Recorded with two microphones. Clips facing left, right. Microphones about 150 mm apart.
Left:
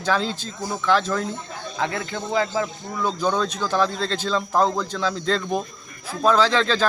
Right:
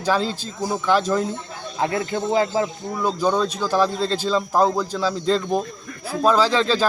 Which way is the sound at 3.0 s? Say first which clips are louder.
Right 2 dB; 5° right (ahead or behind).